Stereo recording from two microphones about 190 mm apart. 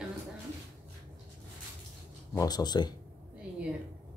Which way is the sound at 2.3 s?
20° left (ahead or behind).